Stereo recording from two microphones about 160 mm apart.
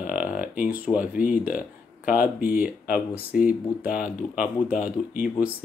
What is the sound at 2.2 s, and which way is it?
Speech, 65° left (ahead or behind).